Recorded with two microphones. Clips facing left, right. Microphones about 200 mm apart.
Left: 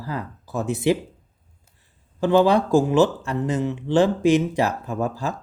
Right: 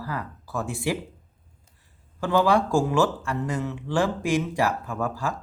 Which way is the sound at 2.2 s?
20° left (ahead or behind).